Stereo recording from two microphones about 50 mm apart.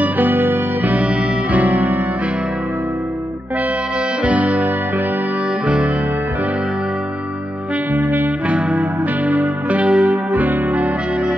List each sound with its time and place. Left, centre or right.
0.0 s music: right
4.2 s music: right
7.9 s music: right
8.5 s music: right